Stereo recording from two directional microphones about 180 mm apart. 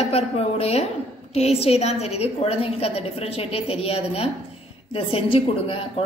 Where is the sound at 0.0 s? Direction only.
35° left (ahead or behind).